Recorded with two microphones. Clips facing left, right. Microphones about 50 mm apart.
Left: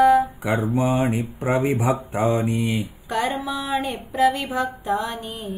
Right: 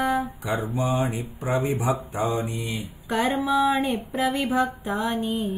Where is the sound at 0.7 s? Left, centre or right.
Left.